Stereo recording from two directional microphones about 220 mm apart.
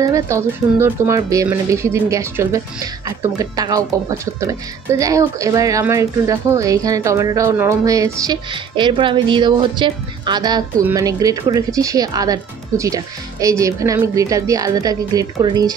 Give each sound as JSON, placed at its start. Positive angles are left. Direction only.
{"t": 0.0, "sound": "speech", "side_deg": -15}